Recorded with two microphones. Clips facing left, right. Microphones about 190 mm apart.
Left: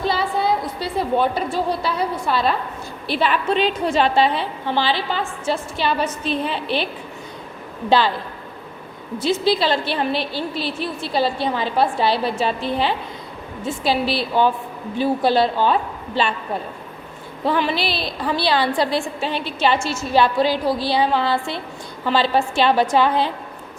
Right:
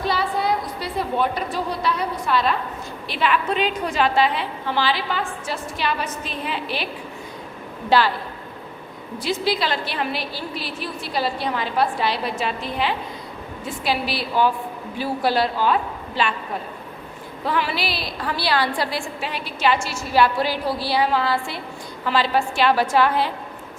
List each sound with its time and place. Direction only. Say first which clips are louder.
0.1 s a woman's voice: even; 25° left (ahead or behind)
7.9 s a woman's voice: left 1 dB; 25° left (ahead or behind)
9.1 s a woman's voice: left 4 dB; 25° left (ahead or behind)
17.4 s a woman's voice: left 4 dB; 25° left (ahead or behind)